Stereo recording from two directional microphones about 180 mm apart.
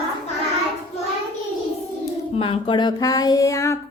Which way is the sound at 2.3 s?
30° left (ahead or behind).